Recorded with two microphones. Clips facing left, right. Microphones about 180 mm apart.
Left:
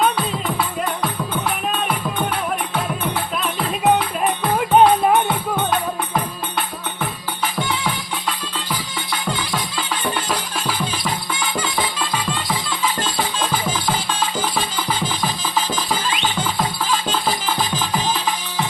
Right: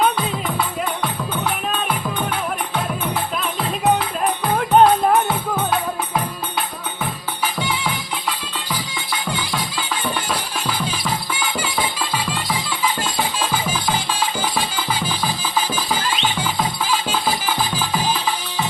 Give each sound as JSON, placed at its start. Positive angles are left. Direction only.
{"t": 4.5, "sound": "music", "side_deg": 5}
{"t": 9.5, "sound": "music", "side_deg": 0}
{"t": 15.5, "sound": "music", "side_deg": -10}